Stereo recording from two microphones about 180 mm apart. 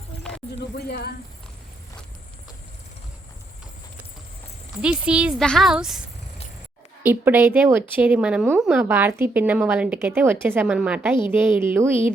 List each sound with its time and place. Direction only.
0.2 s a sound: 5° left (ahead or behind)
0.8 s speech: 65° left (ahead or behind)
4.8 s speech: 5° right (ahead or behind)
7.1 s a woman's voice: 10° right (ahead or behind)